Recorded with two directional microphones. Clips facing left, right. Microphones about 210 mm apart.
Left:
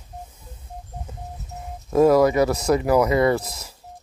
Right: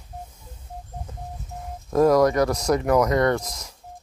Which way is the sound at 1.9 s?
5° left (ahead or behind).